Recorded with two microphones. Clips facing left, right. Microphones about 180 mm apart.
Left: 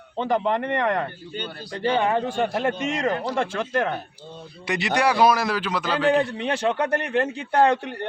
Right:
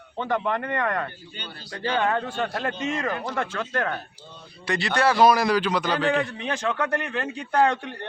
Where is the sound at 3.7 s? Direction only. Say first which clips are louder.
Left 3 dB; 20° left (ahead or behind).